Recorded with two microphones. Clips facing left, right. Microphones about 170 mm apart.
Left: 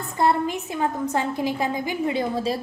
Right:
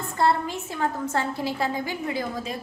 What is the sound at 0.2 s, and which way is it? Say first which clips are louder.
A woman's voice: left 2 dB; 20° left (ahead or behind).